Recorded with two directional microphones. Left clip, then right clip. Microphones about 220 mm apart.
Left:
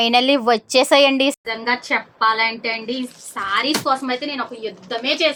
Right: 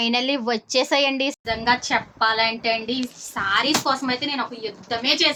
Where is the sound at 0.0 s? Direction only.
30° left (ahead or behind).